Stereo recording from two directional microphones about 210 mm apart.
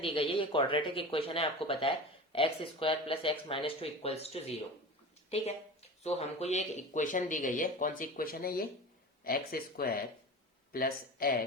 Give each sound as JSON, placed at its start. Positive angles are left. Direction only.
{"t": 0.0, "sound": "speech", "side_deg": 25}
{"t": 6.0, "sound": "speech", "side_deg": 30}